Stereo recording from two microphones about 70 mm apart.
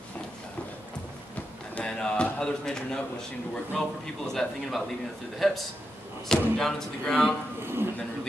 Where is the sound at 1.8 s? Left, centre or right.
Centre.